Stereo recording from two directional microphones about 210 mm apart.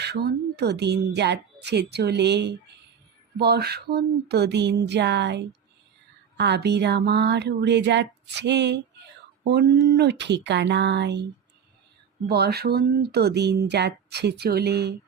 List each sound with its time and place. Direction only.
0.0 s speech: 50° right (ahead or behind)
12.3 s speech: 50° right (ahead or behind)